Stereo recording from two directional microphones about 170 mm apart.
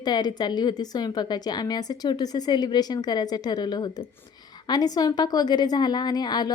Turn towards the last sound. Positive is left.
turn(degrees=25)  # may be behind; listen again after turning